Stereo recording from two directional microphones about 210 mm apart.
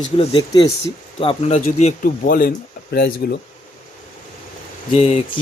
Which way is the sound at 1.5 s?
40° left (ahead or behind).